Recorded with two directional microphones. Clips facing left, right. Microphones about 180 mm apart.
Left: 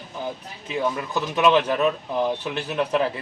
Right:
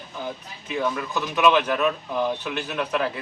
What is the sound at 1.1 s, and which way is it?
Speech, 30° left (ahead or behind).